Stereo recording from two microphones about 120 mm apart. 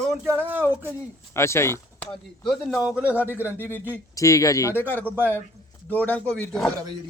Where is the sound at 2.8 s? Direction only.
10° right (ahead or behind).